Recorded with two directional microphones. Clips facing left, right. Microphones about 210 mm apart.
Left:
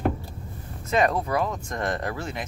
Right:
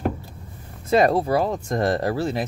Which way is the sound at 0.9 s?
30° right (ahead or behind).